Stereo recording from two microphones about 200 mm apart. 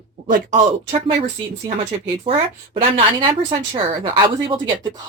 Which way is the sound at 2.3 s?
25° right (ahead or behind).